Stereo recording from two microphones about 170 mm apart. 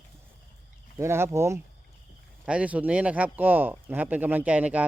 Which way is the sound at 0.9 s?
15° right (ahead or behind).